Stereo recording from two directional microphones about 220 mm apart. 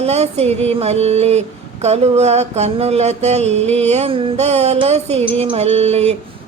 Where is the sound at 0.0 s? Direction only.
30° right (ahead or behind).